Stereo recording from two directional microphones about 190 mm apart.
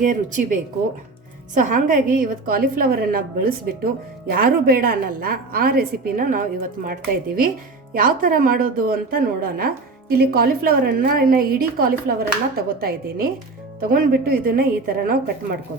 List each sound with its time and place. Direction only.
0.0 s a woman's voice: 45° right (ahead or behind)
1.5 s a woman's voice: 45° right (ahead or behind)